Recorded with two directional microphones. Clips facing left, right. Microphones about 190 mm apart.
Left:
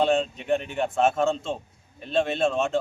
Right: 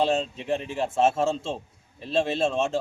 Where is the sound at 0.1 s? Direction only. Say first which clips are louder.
Left 3 dB; 30° right (ahead or behind).